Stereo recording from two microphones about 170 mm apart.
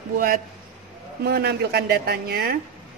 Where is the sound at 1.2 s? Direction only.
70° right (ahead or behind).